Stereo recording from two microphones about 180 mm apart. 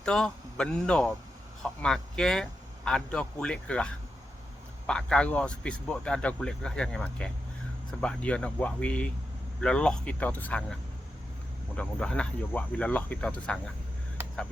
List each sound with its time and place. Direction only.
0.0 s speech: 5° left (ahead or behind)
11.8 s speech: 5° left (ahead or behind)